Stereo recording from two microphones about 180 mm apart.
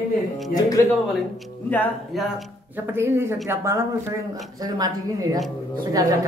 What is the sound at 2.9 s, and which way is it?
A woman's voice, 15° right (ahead or behind).